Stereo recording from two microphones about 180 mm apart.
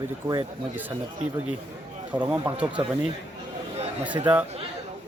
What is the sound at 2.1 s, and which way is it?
Speech, 10° right (ahead or behind).